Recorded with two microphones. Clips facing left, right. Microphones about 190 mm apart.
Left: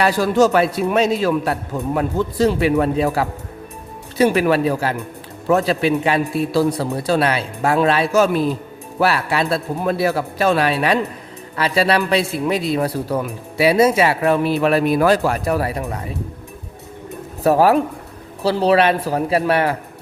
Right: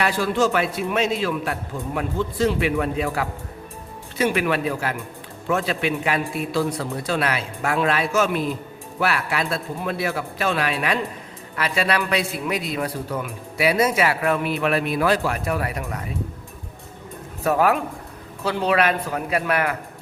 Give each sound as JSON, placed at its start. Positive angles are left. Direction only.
{"t": 0.0, "sound": "a man's voice", "side_deg": 40}
{"t": 17.4, "sound": "a man's voice", "side_deg": 35}